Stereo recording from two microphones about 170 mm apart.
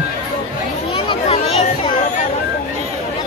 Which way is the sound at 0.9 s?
35° left (ahead or behind).